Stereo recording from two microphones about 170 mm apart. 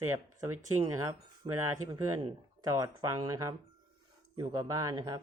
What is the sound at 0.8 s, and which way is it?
Speech, 25° right (ahead or behind).